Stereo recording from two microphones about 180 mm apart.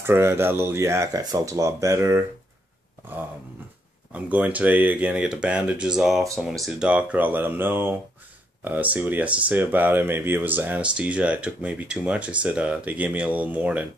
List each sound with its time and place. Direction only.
0.0 s speech: 15° right (ahead or behind)
4.1 s speech: 10° right (ahead or behind)